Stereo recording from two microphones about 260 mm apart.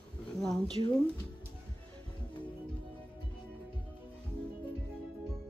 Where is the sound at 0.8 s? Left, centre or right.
Centre.